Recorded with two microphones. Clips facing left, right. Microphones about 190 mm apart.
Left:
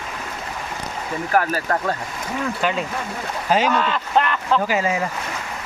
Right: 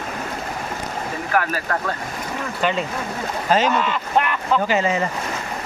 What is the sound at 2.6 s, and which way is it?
Speech, 5° left (ahead or behind).